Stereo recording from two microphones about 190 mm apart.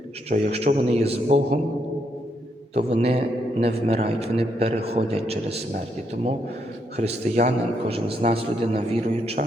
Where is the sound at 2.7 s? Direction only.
35° right (ahead or behind).